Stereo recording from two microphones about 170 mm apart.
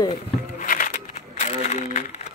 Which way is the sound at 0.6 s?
50° left (ahead or behind).